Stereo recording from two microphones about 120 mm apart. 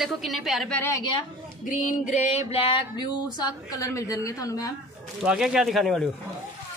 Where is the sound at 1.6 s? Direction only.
90° left.